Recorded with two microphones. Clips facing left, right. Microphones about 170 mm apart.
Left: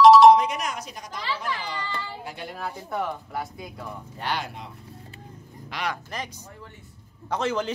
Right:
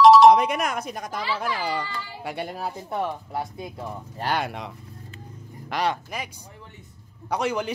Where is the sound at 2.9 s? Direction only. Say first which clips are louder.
Right 1 dB; 25° right (ahead or behind).